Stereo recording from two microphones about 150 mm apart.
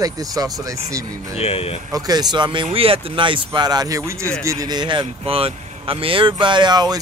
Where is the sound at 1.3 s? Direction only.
45° left (ahead or behind).